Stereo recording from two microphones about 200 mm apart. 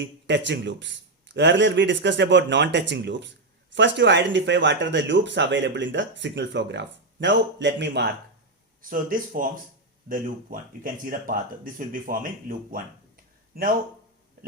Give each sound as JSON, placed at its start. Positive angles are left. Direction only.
{"t": 0.0, "sound": "speech", "side_deg": -65}
{"t": 8.8, "sound": "speech", "side_deg": -45}